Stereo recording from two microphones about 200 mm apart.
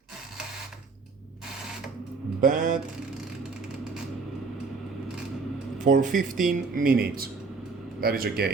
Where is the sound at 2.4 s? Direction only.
40° right (ahead or behind).